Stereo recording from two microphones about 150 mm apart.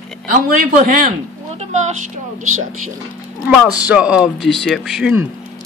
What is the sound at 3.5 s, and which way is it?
Speech, 10° right (ahead or behind).